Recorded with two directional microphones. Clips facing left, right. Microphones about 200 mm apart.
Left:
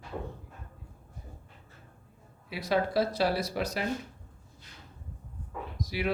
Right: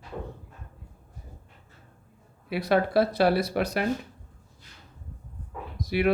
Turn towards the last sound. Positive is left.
turn(degrees=-60)  # may be behind; listen again after turning